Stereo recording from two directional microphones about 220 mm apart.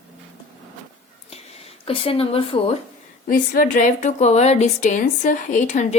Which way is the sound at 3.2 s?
40° left (ahead or behind).